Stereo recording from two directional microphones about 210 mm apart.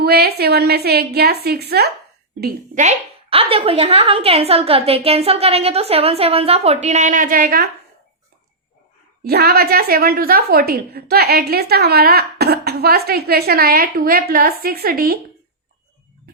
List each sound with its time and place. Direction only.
0.0 s a woman's voice: 50° right (ahead or behind)
2.4 s a woman's voice: 35° right (ahead or behind)
9.2 s a woman's voice: 50° right (ahead or behind)